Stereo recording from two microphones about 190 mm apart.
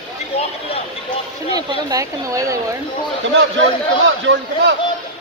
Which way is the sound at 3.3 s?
80° right.